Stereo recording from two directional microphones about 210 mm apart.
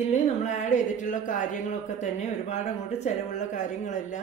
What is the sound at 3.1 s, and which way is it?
Speech, 35° left (ahead or behind).